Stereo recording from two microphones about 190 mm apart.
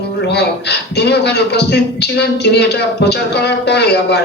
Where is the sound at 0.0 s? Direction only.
60° left (ahead or behind).